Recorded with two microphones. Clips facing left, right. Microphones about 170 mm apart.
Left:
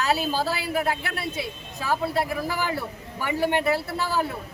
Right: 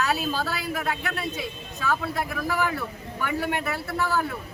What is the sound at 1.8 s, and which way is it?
A man's voice, 30° left (ahead or behind).